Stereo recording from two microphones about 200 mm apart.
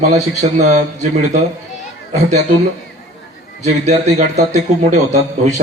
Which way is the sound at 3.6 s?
35° right (ahead or behind).